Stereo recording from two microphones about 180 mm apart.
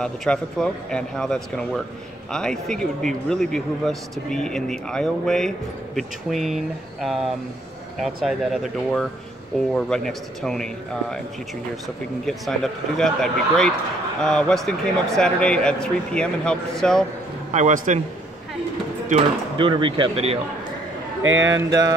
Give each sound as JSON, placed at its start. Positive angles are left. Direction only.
{"t": 0.0, "sound": "a man's voice", "side_deg": 5}
{"t": 12.3, "sound": "a man's voice", "side_deg": 0}
{"t": 17.5, "sound": "a man's voice", "side_deg": -40}
{"t": 19.5, "sound": "speech", "side_deg": -25}
{"t": 21.2, "sound": "speech", "side_deg": -90}
{"t": 21.5, "sound": "speech", "side_deg": -20}